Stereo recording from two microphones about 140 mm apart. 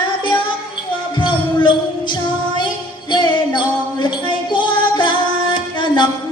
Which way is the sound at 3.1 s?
30° left (ahead or behind).